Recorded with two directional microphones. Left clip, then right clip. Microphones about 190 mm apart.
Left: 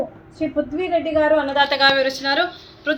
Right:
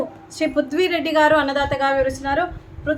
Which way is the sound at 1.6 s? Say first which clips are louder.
Left 3 dB; 5° right (ahead or behind).